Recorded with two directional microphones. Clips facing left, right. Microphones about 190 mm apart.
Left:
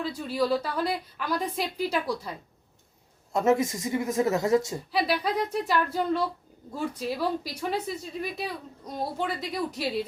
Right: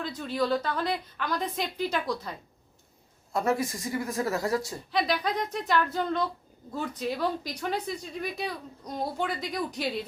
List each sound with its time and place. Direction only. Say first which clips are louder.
0.0 s a woman's voice: left 2 dB; 5° left (ahead or behind)
3.3 s speech: left 4 dB; 20° left (ahead or behind)
4.9 s a woman's voice: even; 5° left (ahead or behind)